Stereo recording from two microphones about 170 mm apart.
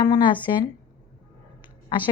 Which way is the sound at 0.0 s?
30° left (ahead or behind).